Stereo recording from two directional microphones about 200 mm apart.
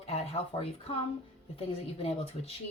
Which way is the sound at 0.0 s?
30° left (ahead or behind).